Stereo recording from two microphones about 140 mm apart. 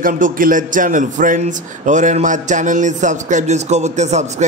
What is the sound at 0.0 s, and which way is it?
A man's voice, 75° right (ahead or behind).